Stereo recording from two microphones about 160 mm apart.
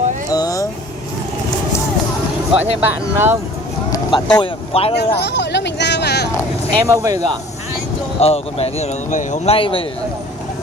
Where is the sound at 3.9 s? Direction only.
25° left (ahead or behind).